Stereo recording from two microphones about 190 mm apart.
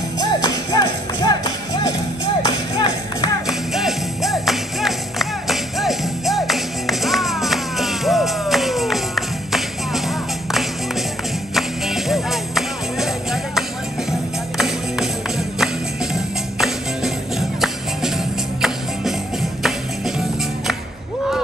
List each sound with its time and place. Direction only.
0.2 s music: 20° left (ahead or behind)
3.4 s music: centre (ahead or behind)